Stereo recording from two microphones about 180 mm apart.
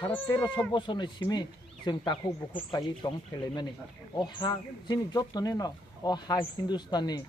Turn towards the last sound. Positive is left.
turn(degrees=25)  # may be behind; listen again after turning